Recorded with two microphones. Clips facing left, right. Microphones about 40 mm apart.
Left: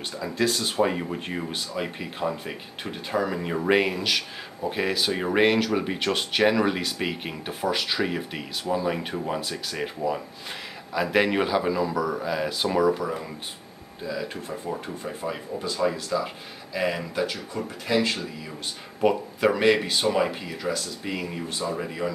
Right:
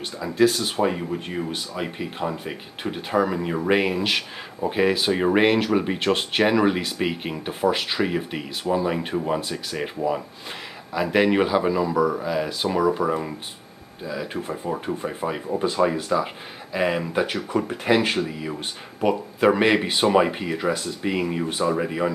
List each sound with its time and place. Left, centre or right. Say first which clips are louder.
0.2 s speech: right 6 dB; centre
4.0 s speech: right 2 dB; right
4.6 s speech: right 5 dB; centre
13.0 s speech: right 6 dB; right
17.5 s speech: right 6 dB; right
19.0 s speech: even; centre
19.4 s speech: right 2 dB; right